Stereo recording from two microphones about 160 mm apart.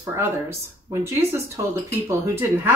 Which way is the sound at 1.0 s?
15° right (ahead or behind).